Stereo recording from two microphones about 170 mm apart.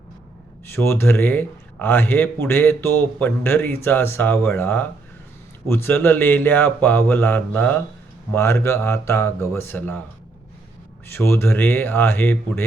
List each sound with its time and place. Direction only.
0.8 s speech: 15° left (ahead or behind)
11.1 s speech: 15° left (ahead or behind)